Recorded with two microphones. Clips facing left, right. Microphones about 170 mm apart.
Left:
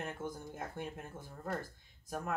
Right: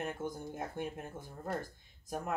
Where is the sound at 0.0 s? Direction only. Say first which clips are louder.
Right 3 dB; 15° right (ahead or behind).